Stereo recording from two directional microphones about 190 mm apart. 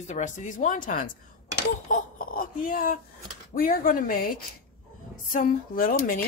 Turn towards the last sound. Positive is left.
turn(degrees=50)  # may be behind; listen again after turning